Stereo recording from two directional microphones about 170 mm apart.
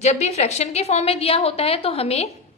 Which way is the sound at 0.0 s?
40° left (ahead or behind).